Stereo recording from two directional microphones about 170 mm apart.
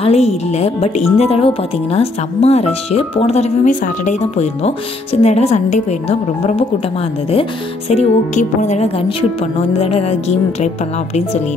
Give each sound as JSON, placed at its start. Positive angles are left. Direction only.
{"t": 0.0, "sound": "speech", "side_deg": 40}